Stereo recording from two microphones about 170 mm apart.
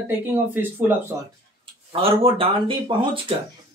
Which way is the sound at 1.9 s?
35° right (ahead or behind).